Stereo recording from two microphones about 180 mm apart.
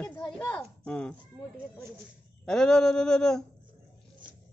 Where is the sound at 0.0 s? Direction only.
15° left (ahead or behind).